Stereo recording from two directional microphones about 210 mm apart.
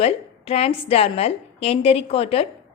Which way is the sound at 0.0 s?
30° left (ahead or behind).